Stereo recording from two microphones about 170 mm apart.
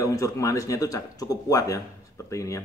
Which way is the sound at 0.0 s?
20° left (ahead or behind).